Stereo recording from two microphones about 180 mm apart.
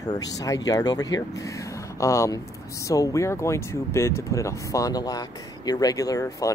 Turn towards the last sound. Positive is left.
turn(degrees=20)  # may be behind; listen again after turning